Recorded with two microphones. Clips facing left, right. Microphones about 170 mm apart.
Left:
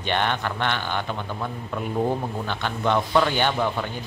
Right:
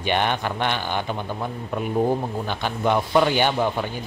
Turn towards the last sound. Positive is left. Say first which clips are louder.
# right 2 dB
turn(degrees=-15)  # may be behind; listen again after turning